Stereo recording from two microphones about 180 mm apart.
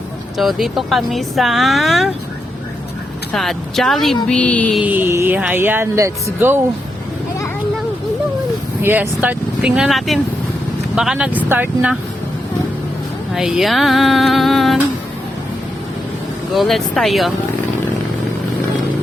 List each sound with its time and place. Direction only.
0.3 s speech: centre (ahead or behind)
3.3 s speech: centre (ahead or behind)
4.3 s a sound: 5° left (ahead or behind)
4.8 s speech: 10° right (ahead or behind)
8.8 s speech: 10° right (ahead or behind)
13.3 s speech: centre (ahead or behind)
16.6 s speech: centre (ahead or behind)